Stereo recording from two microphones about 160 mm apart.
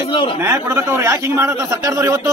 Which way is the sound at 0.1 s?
35° left (ahead or behind).